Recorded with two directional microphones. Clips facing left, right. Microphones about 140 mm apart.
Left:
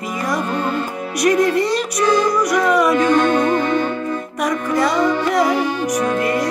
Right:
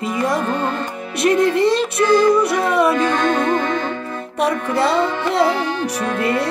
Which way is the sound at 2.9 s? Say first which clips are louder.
Left 3 dB; 10° left (ahead or behind).